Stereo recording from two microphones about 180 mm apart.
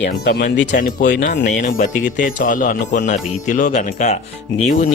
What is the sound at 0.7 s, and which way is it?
Speech, 45° left (ahead or behind).